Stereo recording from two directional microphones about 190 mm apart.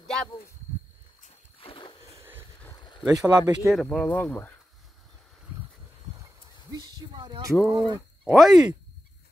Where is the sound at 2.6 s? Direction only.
20° left (ahead or behind).